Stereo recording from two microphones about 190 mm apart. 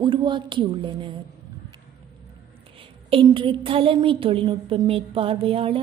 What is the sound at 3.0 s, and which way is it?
A woman's voice, 25° right (ahead or behind).